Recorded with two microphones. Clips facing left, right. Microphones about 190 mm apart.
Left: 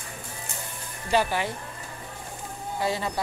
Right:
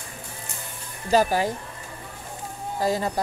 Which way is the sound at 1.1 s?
40° right (ahead or behind).